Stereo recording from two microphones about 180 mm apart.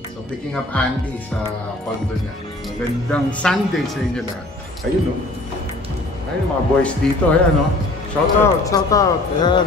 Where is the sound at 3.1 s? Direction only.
5° left (ahead or behind).